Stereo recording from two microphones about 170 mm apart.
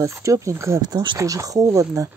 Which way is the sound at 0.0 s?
20° right (ahead or behind).